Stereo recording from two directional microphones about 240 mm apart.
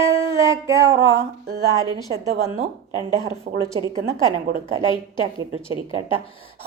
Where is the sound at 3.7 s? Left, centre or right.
Centre.